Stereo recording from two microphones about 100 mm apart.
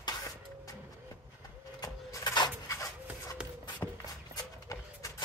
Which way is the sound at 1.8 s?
35° left (ahead or behind).